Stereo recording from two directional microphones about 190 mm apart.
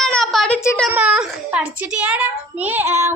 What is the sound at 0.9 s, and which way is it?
A child's voice, 5° right (ahead or behind).